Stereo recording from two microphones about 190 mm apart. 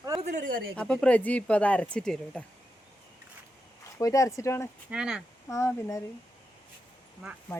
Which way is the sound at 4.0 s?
15° left (ahead or behind).